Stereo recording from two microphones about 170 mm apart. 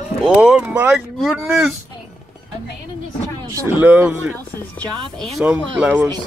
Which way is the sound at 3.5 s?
10° right (ahead or behind).